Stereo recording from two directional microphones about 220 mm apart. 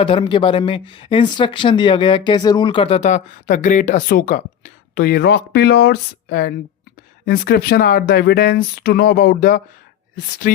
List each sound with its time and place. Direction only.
0.0 s speech: 25° left (ahead or behind)